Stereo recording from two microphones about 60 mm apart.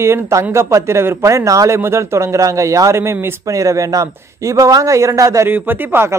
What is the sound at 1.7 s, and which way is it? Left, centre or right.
Speech, right.